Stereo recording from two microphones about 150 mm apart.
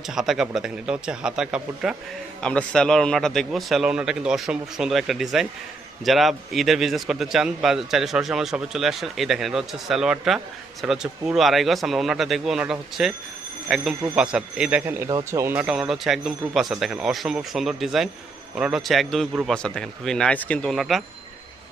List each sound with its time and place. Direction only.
0.1 s a man's voice: 5° right (ahead or behind)
15.0 s speech: 30° right (ahead or behind)
15.4 s a man's voice: 10° right (ahead or behind)